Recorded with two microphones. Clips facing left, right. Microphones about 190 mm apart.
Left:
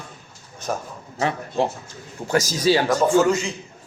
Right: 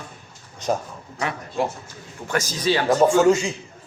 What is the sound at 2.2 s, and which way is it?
Speech, 40° left (ahead or behind).